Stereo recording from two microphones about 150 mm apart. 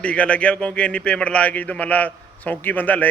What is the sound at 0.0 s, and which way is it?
A man's voice, 10° left (ahead or behind).